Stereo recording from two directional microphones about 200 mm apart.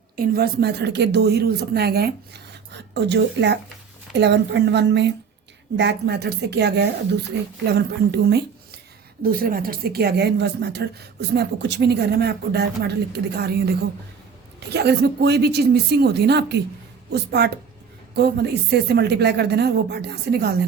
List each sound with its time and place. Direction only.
0.2 s speech: 50° right (ahead or behind)